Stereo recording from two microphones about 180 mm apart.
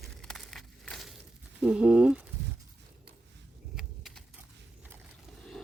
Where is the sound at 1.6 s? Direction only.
5° right (ahead or behind).